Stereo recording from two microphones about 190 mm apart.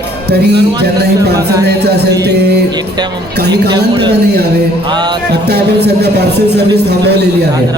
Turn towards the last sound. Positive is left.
turn(degrees=-60)  # may be behind; listen again after turning